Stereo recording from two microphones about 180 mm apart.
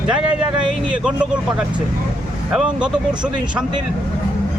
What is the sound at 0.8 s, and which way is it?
Speech, 5° right (ahead or behind).